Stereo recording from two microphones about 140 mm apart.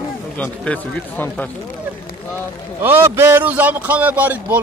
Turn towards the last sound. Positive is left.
turn(degrees=-10)  # may be behind; listen again after turning